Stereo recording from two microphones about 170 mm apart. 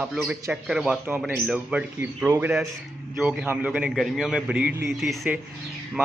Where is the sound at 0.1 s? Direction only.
5° right (ahead or behind).